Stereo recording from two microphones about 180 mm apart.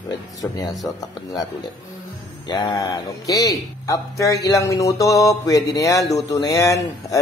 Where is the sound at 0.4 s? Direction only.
15° left (ahead or behind).